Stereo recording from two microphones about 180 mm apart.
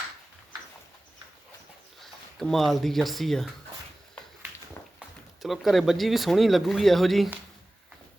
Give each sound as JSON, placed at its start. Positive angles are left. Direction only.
{"t": 2.0, "sound": "speech", "side_deg": 0}
{"t": 4.9, "sound": "speech", "side_deg": 0}